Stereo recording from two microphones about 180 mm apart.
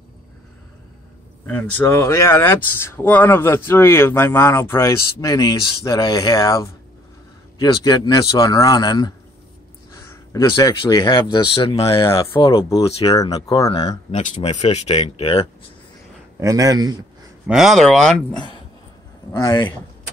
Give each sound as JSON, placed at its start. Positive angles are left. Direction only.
{"t": 1.4, "sound": "speech", "side_deg": 10}
{"t": 14.1, "sound": "speech", "side_deg": 40}
{"t": 16.3, "sound": "a man's voice", "side_deg": -20}
{"t": 17.5, "sound": "speech", "side_deg": 0}
{"t": 18.3, "sound": "speech", "side_deg": 25}